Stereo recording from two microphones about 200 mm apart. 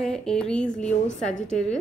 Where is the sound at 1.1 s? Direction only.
40° left (ahead or behind).